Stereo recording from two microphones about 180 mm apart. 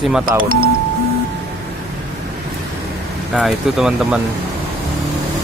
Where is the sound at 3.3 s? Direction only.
5° right (ahead or behind).